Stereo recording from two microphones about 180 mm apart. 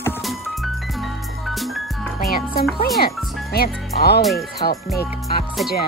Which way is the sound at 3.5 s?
60° left (ahead or behind).